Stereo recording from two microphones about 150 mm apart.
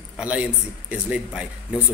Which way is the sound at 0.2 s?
10° right (ahead or behind).